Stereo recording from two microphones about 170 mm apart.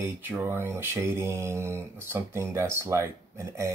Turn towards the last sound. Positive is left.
turn(degrees=-15)  # may be behind; listen again after turning